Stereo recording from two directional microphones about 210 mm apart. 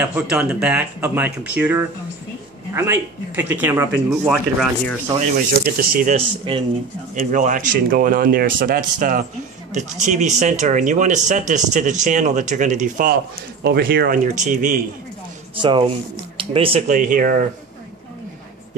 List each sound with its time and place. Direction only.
0.0 s speech: 5° right (ahead or behind)
5.5 s speech: 45° right (ahead or behind)
6.1 s speech: 25° right (ahead or behind)
7.2 s speech: 40° right (ahead or behind)
15.6 s speech: 20° right (ahead or behind); by 17.5 s 40° right (ahead or behind)